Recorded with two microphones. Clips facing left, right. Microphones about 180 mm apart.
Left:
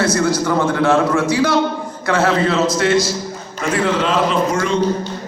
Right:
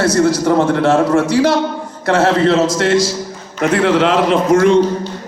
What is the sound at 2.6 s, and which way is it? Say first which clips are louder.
Speech: right 2 dB; 90° right.